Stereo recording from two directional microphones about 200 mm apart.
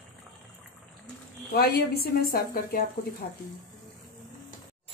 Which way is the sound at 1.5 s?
50° left (ahead or behind).